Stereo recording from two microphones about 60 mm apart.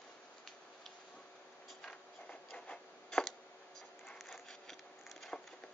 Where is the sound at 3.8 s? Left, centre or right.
Centre.